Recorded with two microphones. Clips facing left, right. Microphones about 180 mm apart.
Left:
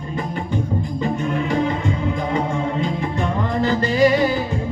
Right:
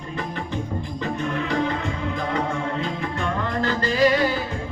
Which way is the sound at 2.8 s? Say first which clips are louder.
Left 4 dB; 20° left (ahead or behind).